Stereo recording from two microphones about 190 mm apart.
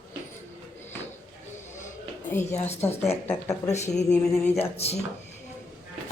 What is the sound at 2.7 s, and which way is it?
A woman's voice, 35° left (ahead or behind).